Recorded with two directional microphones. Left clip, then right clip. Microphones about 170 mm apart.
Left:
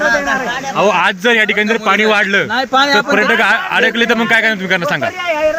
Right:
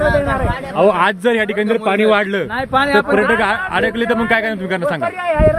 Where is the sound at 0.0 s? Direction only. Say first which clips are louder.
Left 2 dB; 30° right (ahead or behind).